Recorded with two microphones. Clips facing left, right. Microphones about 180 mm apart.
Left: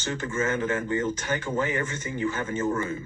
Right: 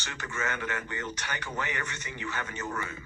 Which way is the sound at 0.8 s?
45° left (ahead or behind).